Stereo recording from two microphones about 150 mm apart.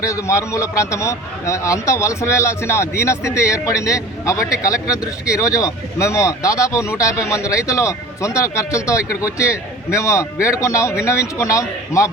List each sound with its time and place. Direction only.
0.0 s speech: 20° left (ahead or behind)